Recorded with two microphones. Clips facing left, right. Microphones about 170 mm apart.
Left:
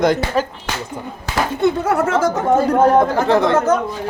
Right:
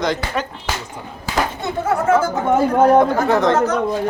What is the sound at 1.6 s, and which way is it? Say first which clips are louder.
Speech: left 4 dB; 90° left.